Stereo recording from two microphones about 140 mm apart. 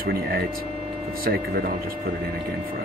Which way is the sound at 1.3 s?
90° right.